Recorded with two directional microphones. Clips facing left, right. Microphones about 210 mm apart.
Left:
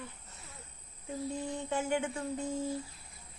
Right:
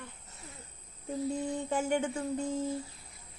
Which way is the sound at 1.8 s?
30° right (ahead or behind).